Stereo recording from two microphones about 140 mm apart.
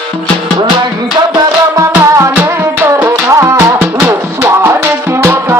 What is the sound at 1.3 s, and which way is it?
Music, 20° right (ahead or behind).